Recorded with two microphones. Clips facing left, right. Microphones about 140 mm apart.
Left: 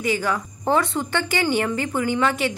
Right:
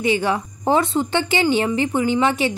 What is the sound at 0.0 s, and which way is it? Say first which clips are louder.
A woman's voice: right 4 dB; 25° right (ahead or behind).